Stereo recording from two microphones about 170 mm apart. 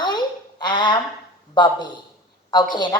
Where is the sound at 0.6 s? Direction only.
25° left (ahead or behind).